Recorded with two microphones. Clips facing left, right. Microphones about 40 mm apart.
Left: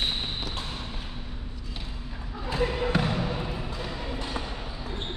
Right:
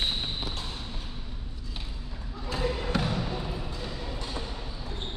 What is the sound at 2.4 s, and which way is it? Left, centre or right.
Basketball bounce, centre.